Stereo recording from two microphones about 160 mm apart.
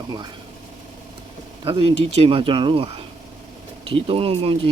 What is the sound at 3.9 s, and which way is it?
Speech, 35° right (ahead or behind).